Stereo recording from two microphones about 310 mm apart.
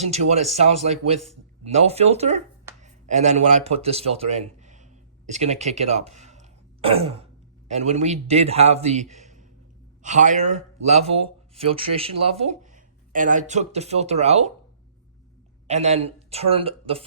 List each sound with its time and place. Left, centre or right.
0.0 s a man's voice: right
15.6 s speech: right